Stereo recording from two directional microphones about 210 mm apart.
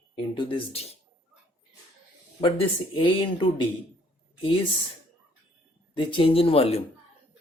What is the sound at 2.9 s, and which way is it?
Speech, 20° left (ahead or behind).